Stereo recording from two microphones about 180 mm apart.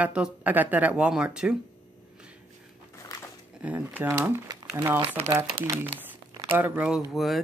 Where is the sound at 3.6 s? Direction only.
10° right (ahead or behind).